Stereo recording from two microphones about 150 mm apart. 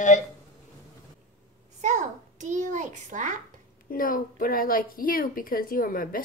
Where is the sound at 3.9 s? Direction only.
70° left (ahead or behind).